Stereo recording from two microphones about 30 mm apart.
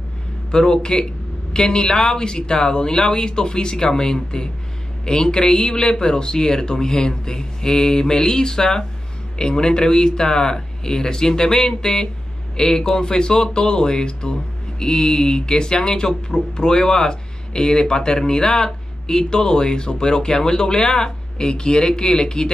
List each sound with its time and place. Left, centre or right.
0.5 s speech: left